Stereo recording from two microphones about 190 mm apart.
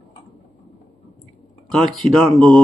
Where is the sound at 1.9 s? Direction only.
Centre (ahead or behind).